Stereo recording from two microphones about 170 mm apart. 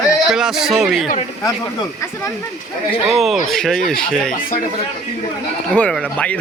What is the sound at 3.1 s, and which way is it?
Speech, centre (ahead or behind).